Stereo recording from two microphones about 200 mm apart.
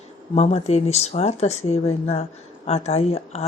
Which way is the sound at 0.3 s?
30° left (ahead or behind).